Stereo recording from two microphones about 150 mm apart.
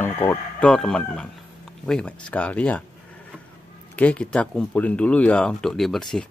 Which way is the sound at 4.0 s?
10° left (ahead or behind).